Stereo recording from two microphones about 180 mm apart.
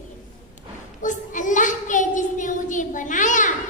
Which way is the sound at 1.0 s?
45° left (ahead or behind).